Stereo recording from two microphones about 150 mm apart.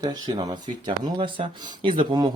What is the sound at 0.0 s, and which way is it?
Speech, 30° right (ahead or behind).